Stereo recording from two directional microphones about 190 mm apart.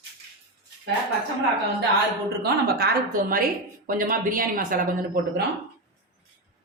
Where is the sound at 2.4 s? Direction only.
55° right (ahead or behind).